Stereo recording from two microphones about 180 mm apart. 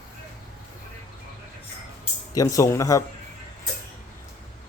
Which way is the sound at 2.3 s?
20° left (ahead or behind).